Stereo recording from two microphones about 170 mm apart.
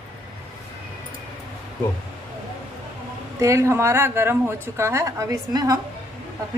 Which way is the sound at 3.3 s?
15° right (ahead or behind).